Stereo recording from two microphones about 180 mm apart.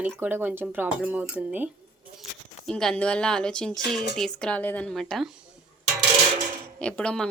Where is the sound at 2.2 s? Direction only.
5° left (ahead or behind).